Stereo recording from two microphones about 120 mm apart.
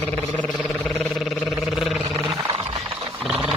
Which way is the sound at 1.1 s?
Centre (ahead or behind).